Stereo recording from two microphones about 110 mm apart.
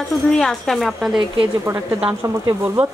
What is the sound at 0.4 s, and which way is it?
Speech, 5° left (ahead or behind).